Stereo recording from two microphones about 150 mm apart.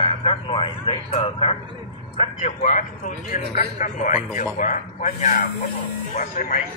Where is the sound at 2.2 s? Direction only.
50° left (ahead or behind).